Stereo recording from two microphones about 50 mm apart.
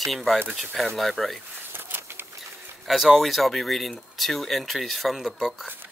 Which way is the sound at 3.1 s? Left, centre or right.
Centre.